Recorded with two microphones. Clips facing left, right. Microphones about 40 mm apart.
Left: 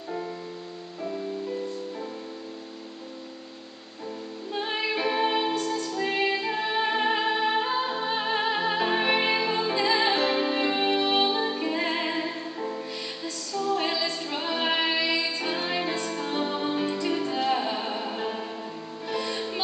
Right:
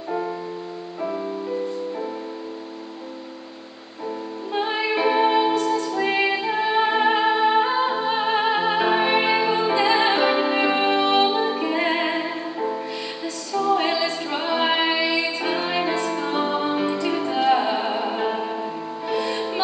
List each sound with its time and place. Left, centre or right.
1.0 s music: right
4.5 s music: centre